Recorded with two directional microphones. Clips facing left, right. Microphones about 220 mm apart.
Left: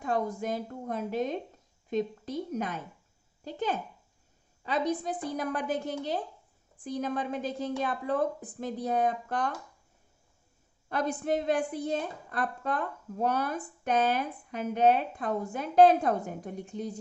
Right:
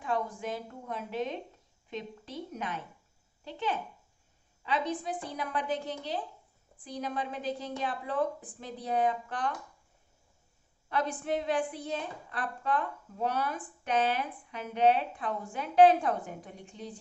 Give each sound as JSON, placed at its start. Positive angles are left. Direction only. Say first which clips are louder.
{"t": 0.0, "sound": "a woman's voice", "louder": "left 3 dB", "side_deg": 40}
{"t": 10.8, "sound": "a woman's voice", "louder": "left 2 dB", "side_deg": 45}